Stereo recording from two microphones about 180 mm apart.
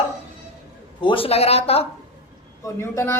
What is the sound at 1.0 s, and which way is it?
Speech, 30° left (ahead or behind).